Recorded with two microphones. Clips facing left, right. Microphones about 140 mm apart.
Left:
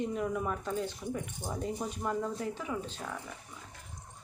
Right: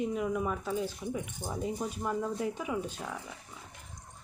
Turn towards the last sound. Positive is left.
turn(degrees=-10)  # may be behind; listen again after turning